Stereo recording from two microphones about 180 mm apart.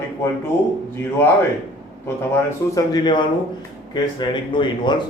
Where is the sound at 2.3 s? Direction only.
20° left (ahead or behind).